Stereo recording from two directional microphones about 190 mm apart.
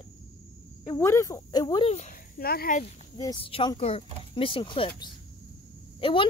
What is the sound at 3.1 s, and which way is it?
Speech, 25° left (ahead or behind).